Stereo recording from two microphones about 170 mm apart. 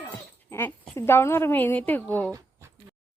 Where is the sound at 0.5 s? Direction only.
15° left (ahead or behind).